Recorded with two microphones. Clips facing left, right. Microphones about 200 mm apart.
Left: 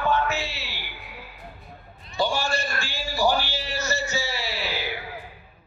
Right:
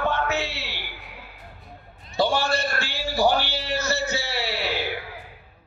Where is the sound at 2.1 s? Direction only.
65° right (ahead or behind).